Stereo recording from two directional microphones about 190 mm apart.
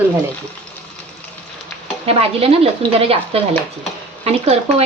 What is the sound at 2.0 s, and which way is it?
Speech, 30° right (ahead or behind).